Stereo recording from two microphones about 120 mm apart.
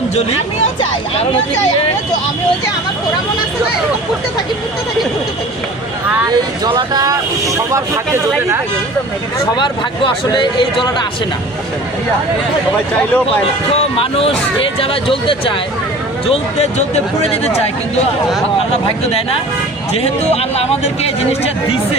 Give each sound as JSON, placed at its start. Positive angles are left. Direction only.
{"t": 6.2, "sound": "speech", "side_deg": -40}
{"t": 9.6, "sound": "speech", "side_deg": 40}
{"t": 14.0, "sound": "speech", "side_deg": 50}
{"t": 16.3, "sound": "speech", "side_deg": 65}
{"t": 19.9, "sound": "speech", "side_deg": 60}